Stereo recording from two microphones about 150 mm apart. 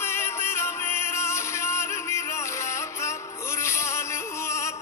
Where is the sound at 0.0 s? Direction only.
15° left (ahead or behind).